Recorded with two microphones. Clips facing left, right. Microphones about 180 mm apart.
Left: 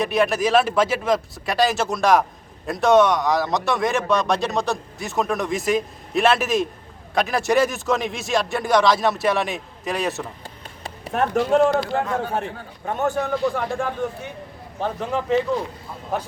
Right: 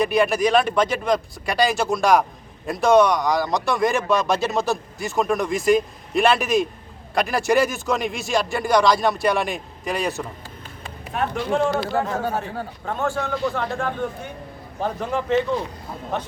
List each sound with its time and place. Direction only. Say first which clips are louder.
0.0 s a man's voice: right 1 dB; centre (ahead or behind)
10.8 s run: left 3 dB; 40° left (ahead or behind)
12.1 s a man's voice: even; 40° right (ahead or behind)
12.8 s a man's voice: left 3 dB; 20° left (ahead or behind); by 15.4 s centre (ahead or behind)